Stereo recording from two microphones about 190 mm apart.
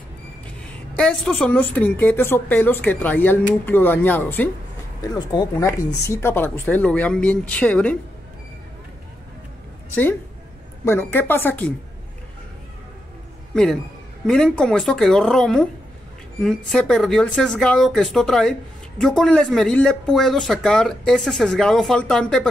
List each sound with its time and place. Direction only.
0.7 s a woman's voice: 5° left (ahead or behind)
10.9 s a woman's voice: 10° left (ahead or behind)
14.2 s speech: 5° left (ahead or behind)